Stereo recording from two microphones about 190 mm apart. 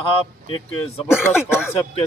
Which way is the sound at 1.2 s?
10° left (ahead or behind).